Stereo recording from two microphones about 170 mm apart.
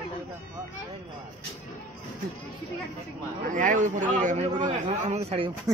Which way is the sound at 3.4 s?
50° right (ahead or behind).